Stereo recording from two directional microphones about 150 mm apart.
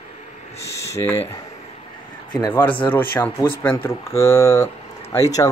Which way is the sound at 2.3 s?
20° left (ahead or behind).